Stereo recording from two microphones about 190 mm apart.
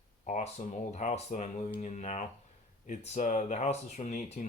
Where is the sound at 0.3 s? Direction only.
40° left (ahead or behind).